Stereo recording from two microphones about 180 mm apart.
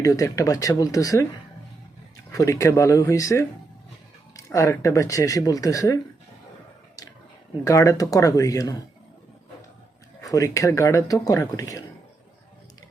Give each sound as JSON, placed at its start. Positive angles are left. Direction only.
{"t": 0.0, "sound": "speech", "side_deg": 20}
{"t": 2.3, "sound": "speech", "side_deg": 20}
{"t": 7.6, "sound": "speech", "side_deg": 15}
{"t": 10.2, "sound": "speech", "side_deg": 20}